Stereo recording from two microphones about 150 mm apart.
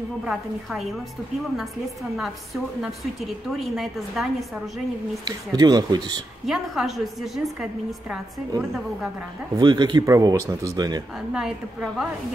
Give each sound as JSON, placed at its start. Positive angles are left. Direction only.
{"t": 0.2, "sound": "a woman's voice", "side_deg": 0}
{"t": 2.1, "sound": "a woman's voice", "side_deg": 0}
{"t": 5.2, "sound": "speech", "side_deg": -25}
{"t": 6.4, "sound": "a woman's voice", "side_deg": 0}
{"t": 9.6, "sound": "speech", "side_deg": -30}
{"t": 11.3, "sound": "a woman's voice", "side_deg": -5}